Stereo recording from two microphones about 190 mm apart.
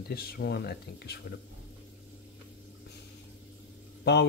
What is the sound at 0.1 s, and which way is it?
Speech, 55° left (ahead or behind).